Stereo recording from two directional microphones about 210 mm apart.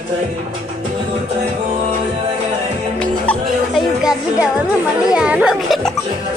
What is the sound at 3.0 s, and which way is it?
Music, 5° left (ahead or behind).